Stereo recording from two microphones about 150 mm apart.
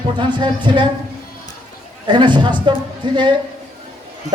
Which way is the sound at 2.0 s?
30° right (ahead or behind).